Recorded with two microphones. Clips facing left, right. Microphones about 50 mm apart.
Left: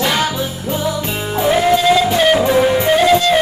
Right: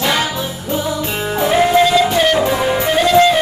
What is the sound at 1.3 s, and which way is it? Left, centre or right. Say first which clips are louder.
Music: right 1 dB; centre.